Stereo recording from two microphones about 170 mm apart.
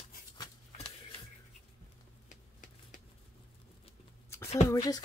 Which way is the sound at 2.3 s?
50° left (ahead or behind).